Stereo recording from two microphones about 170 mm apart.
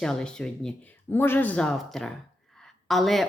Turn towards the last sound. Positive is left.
turn(degrees=0)  # may be behind; listen again after turning